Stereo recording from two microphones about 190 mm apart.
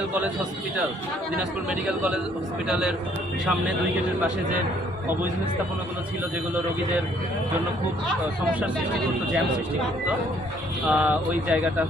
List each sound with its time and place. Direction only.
1.9 s speech: 5° right (ahead or behind)
10.8 s speech: 5° right (ahead or behind)